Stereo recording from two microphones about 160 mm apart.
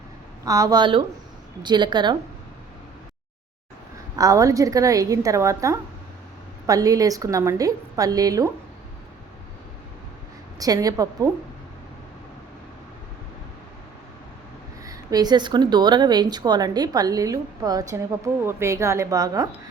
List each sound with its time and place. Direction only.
0.4 s a woman's voice: 20° right (ahead or behind)
4.2 s a woman's voice: 20° right (ahead or behind)
10.6 s a woman's voice: 20° right (ahead or behind)
14.8 s a woman's voice: 25° right (ahead or behind)